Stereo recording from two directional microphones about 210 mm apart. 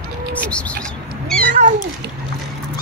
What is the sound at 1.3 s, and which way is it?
Cat, 45° right (ahead or behind).